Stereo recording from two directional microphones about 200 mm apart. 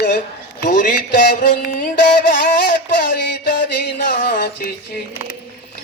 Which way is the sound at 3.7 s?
45° left (ahead or behind).